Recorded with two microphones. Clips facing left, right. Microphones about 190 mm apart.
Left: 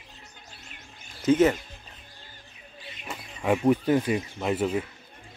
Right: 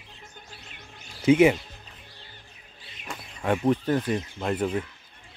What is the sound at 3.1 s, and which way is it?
Speech, 5° left (ahead or behind).